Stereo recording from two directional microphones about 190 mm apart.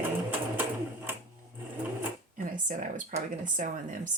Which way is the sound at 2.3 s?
45° right (ahead or behind).